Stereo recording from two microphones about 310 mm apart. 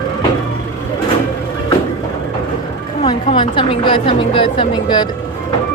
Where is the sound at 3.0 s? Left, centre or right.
Centre.